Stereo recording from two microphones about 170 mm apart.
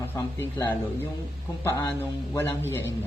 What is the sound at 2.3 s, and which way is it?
Speech, 15° left (ahead or behind).